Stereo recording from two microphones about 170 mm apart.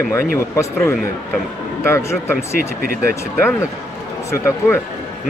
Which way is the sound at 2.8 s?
60° right (ahead or behind).